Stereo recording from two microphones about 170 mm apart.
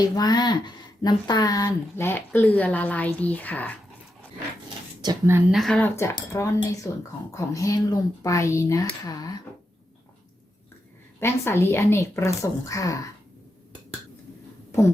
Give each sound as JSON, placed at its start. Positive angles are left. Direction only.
{"t": 0.0, "sound": "speech", "side_deg": 25}
{"t": 5.0, "sound": "speech", "side_deg": -15}
{"t": 5.5, "sound": "speech", "side_deg": 0}
{"t": 6.0, "sound": "speech", "side_deg": 15}
{"t": 11.2, "sound": "speech", "side_deg": 15}